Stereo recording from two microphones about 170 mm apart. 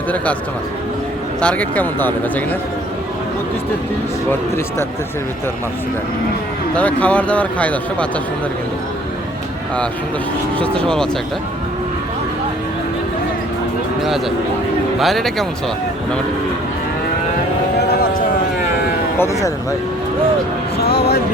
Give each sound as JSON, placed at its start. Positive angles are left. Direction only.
{"t": 1.4, "sound": "speech", "side_deg": 10}
{"t": 4.3, "sound": "speech", "side_deg": 15}
{"t": 6.7, "sound": "speech", "side_deg": 10}
{"t": 10.6, "sound": "speech", "side_deg": 5}
{"t": 14.9, "sound": "speech", "side_deg": 0}
{"t": 19.2, "sound": "speech", "side_deg": 20}
{"t": 20.7, "sound": "speech", "side_deg": 70}